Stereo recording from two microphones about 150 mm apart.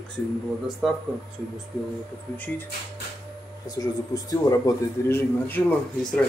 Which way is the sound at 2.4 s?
15° left (ahead or behind).